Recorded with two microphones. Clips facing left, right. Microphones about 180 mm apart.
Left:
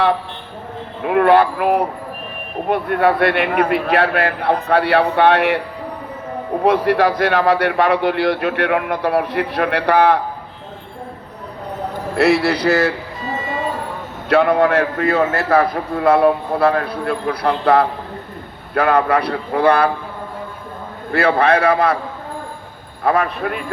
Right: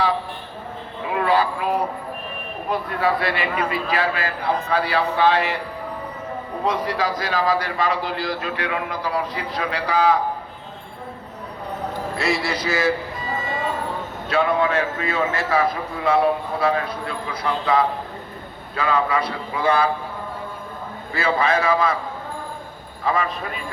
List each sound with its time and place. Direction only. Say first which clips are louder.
1.0 s a man's voice: left 8 dB; 60° left (ahead or behind)
6.8 s a man's voice: left 9 dB; 65° left (ahead or behind)
12.1 s a man's voice: left 10 dB; 65° left (ahead or behind)
14.3 s a man's voice: left 6 dB; 60° left (ahead or behind)
21.1 s a man's voice: left 6 dB; 60° left (ahead or behind)
23.0 s a man's voice: left 6 dB; 60° left (ahead or behind)